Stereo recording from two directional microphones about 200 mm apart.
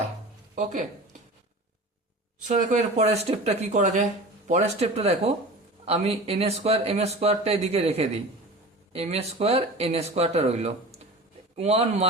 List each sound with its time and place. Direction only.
2.5 s speech: 40° right (ahead or behind)